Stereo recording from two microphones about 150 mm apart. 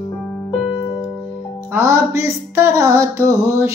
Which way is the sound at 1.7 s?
20° right (ahead or behind).